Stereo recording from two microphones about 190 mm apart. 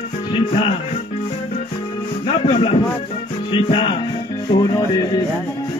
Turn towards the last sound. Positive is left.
turn(degrees=20)  # may be behind; listen again after turning